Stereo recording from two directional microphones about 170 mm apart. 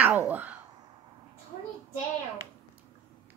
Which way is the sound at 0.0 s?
10° right (ahead or behind).